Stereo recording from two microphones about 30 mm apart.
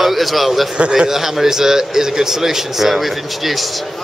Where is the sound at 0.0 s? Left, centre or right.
Centre.